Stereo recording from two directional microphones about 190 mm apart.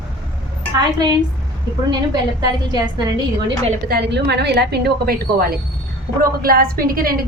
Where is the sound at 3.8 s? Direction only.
60° right (ahead or behind).